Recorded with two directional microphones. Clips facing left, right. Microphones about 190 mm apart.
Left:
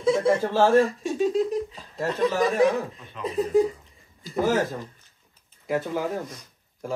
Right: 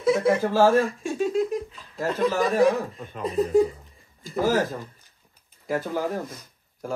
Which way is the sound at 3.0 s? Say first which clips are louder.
Right 3 dB; 45° right (ahead or behind).